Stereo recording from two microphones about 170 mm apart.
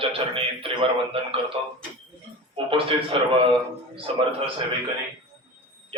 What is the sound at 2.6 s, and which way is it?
A man's voice, 30° right (ahead or behind).